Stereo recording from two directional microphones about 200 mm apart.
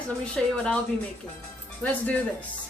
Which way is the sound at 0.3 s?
5° left (ahead or behind).